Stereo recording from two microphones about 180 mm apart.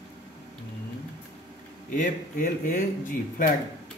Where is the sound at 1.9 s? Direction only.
50° left (ahead or behind).